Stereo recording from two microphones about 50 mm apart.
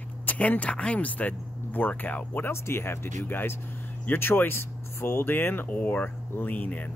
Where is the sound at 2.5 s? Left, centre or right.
Left.